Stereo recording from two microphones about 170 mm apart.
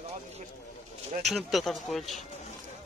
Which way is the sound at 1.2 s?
Centre (ahead or behind).